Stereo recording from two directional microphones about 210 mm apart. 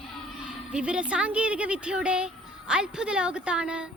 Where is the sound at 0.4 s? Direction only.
5° right (ahead or behind).